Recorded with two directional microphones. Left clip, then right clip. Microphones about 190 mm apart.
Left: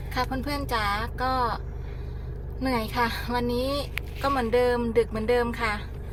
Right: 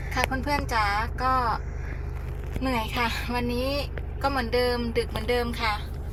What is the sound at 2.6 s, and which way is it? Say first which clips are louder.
Speech: left 1 dB; 15° left (ahead or behind).